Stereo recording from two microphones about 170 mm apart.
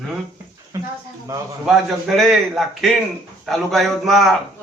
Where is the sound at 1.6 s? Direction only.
Centre (ahead or behind).